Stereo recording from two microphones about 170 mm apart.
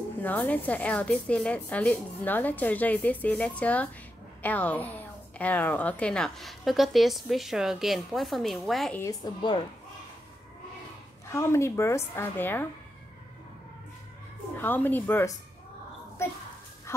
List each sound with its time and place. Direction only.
0.2 s a woman's voice: 10° left (ahead or behind)
9.0 s a woman's voice: 25° left (ahead or behind)
11.2 s a woman's voice: 15° left (ahead or behind)
14.6 s a woman's voice: 10° left (ahead or behind)